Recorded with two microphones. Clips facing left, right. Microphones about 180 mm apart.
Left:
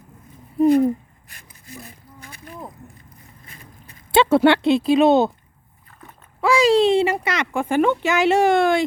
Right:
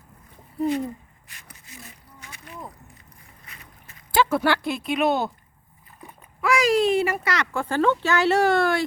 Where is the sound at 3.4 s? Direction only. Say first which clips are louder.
Left 3 dB; 30° left (ahead or behind).